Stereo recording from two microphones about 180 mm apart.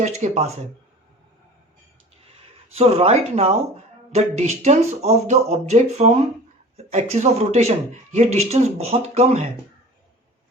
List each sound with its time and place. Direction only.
0.0 s speech: 40° right (ahead or behind)
2.7 s speech: 35° right (ahead or behind)